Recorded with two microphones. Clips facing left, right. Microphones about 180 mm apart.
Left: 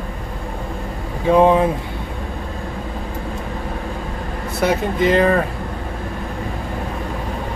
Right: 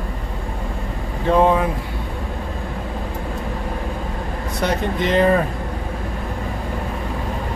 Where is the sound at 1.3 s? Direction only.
15° left (ahead or behind).